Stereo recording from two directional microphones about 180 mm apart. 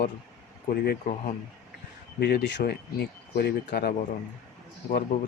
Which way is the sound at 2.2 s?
70° left (ahead or behind).